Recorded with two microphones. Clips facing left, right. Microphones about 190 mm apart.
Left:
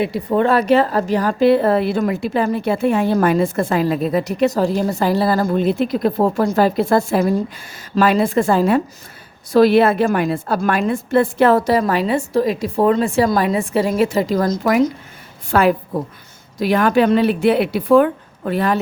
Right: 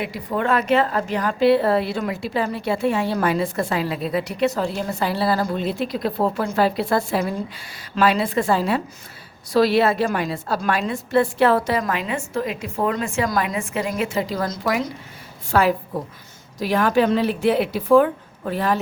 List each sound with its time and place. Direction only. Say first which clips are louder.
0.0 s a woman's voice: left 7 dB; 30° left (ahead or behind)
15.5 s a woman's voice: left 4 dB; 60° left (ahead or behind)